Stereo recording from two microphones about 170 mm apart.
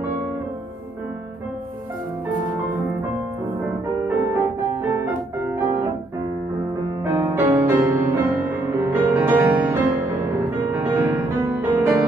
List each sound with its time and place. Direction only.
7.1 s music: 15° right (ahead or behind)